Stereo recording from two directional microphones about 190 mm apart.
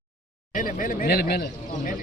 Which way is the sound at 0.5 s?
45° left (ahead or behind).